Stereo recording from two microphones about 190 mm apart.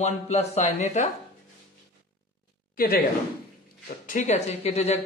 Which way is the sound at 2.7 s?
50° left (ahead or behind).